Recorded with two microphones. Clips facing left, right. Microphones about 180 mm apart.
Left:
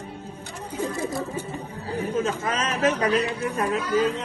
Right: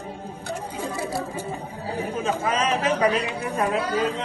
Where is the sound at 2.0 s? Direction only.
30° right (ahead or behind).